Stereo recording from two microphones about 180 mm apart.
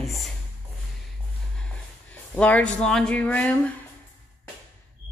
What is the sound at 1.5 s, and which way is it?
Speech, 5° left (ahead or behind).